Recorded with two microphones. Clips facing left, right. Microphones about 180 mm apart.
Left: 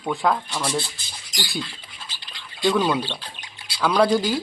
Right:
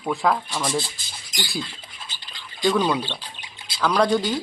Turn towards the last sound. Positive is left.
turn(degrees=5)  # may be behind; listen again after turning